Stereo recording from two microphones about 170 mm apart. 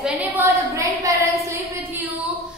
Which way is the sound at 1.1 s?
20° right (ahead or behind).